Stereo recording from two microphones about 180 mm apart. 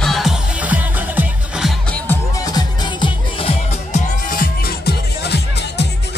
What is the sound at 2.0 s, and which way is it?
Music, 20° left (ahead or behind).